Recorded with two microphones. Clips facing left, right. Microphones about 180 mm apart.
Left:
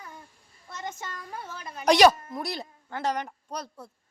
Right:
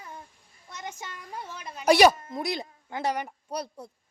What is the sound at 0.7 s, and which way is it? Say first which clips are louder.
A woman's voice: left 2 dB; 10° right (ahead or behind).